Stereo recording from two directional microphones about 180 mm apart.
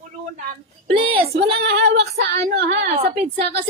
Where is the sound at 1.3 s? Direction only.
65° right (ahead or behind).